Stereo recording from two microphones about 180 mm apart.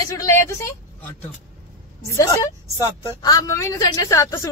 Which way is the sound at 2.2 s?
20° left (ahead or behind).